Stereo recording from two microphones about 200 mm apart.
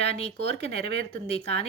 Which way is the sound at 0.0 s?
30° left (ahead or behind).